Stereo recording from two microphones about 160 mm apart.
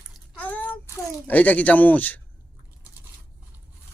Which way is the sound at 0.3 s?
10° left (ahead or behind).